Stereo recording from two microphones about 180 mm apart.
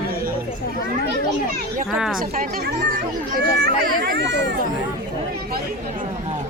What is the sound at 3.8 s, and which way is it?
Speech, 70° right (ahead or behind).